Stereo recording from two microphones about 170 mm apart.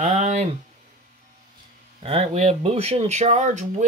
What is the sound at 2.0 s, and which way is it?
Speech, 35° right (ahead or behind).